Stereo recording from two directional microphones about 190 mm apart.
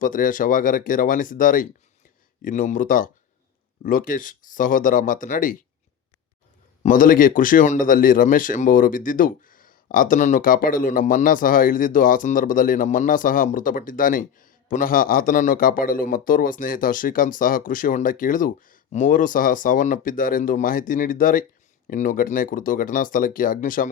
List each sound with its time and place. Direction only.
0.0 s a man's voice: 45° left (ahead or behind)
6.8 s a man's voice: 45° left (ahead or behind)